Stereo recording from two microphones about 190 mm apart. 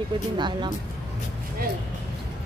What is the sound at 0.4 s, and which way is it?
Speech, 25° right (ahead or behind).